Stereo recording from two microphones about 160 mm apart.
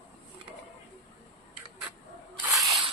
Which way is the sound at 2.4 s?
15° right (ahead or behind).